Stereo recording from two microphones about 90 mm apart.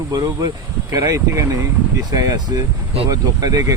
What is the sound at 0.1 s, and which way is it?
Speech, 45° right (ahead or behind).